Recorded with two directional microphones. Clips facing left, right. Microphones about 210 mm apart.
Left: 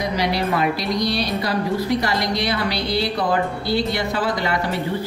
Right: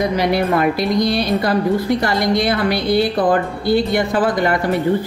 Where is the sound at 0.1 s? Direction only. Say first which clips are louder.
Right 5 dB; 55° right (ahead or behind).